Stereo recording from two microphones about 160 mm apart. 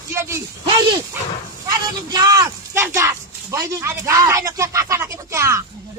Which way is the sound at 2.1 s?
25° right (ahead or behind).